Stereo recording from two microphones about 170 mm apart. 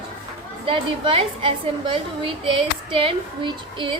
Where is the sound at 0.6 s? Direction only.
30° right (ahead or behind).